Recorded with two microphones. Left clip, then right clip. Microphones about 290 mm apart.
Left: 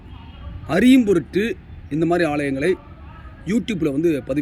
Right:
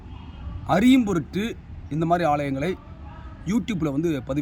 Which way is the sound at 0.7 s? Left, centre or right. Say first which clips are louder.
Left 4 dB; centre.